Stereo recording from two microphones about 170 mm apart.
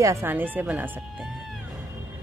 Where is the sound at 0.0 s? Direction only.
15° right (ahead or behind).